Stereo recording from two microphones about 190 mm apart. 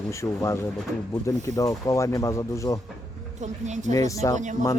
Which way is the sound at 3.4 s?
40° right (ahead or behind).